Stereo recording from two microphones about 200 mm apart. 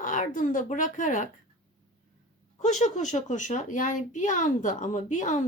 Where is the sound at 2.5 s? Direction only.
35° left (ahead or behind).